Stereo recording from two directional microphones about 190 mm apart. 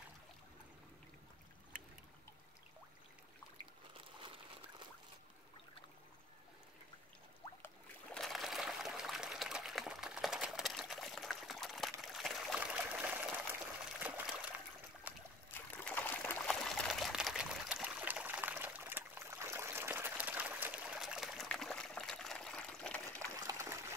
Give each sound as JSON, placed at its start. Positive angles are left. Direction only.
{"t": 4.2, "sound": "a sound", "side_deg": -25}
{"t": 7.6, "sound": "trickle", "side_deg": 5}
{"t": 12.0, "sound": "water", "side_deg": 0}
{"t": 15.1, "sound": "boat", "side_deg": -10}
{"t": 15.5, "sound": "trickle", "side_deg": 10}
{"t": 23.1, "sound": "a sound", "side_deg": -15}